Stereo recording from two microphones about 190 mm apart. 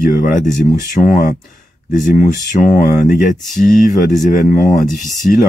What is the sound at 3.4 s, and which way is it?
Speech, centre (ahead or behind).